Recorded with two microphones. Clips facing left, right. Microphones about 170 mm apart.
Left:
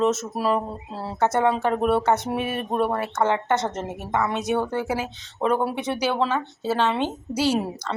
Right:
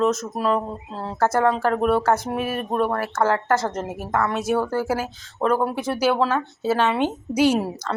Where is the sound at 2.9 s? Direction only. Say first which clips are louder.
Right 1 dB; 20° left (ahead or behind).